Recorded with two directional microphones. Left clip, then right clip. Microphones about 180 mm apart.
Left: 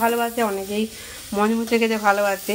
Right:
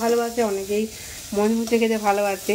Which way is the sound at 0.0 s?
10° left (ahead or behind).